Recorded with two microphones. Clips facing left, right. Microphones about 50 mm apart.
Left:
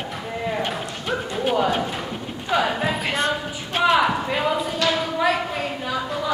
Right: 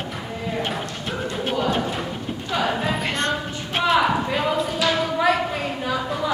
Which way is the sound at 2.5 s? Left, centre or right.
Centre.